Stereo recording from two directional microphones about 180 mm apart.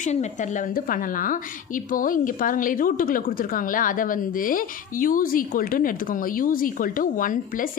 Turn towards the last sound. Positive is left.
turn(degrees=50)  # may be behind; listen again after turning